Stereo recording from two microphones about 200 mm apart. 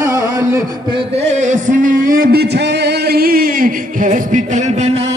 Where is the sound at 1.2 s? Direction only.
35° right (ahead or behind).